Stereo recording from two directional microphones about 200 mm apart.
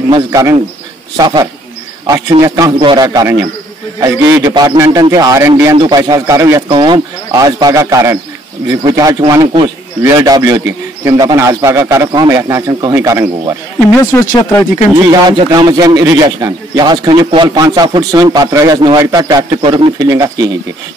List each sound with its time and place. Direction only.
0.1 s a man's voice: 15° right (ahead or behind)
15.0 s speech: 20° right (ahead or behind)